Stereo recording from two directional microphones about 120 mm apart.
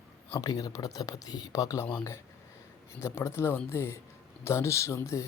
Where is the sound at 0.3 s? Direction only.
30° left (ahead or behind).